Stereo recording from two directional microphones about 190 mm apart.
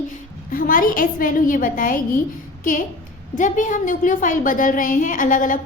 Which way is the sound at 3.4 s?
40° left (ahead or behind).